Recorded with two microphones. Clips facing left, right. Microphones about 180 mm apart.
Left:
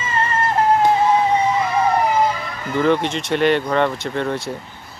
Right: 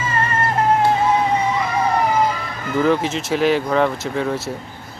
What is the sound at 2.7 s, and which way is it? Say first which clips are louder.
Speech: even; 5° right (ahead or behind).